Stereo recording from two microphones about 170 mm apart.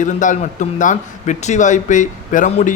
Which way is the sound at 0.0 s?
50° left (ahead or behind).